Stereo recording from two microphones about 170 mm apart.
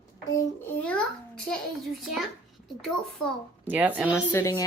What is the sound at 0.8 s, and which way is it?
Speech, 5° left (ahead or behind).